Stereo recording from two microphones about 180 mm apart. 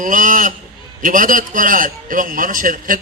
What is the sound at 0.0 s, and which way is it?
A man's voice, 45° right (ahead or behind).